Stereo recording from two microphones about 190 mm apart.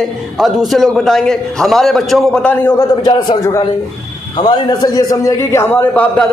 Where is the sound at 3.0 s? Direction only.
20° left (ahead or behind); by 6.3 s 5° left (ahead or behind).